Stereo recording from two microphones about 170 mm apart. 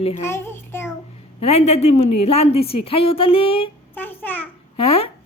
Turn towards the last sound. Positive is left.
turn(degrees=35)  # may be behind; listen again after turning